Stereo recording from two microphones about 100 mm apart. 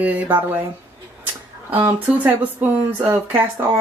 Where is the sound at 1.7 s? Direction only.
20° right (ahead or behind).